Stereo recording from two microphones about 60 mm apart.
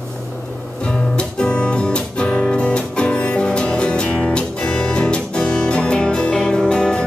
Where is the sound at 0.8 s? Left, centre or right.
Centre.